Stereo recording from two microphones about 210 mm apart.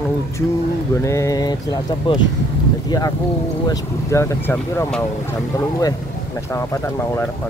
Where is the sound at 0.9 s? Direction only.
15° left (ahead or behind).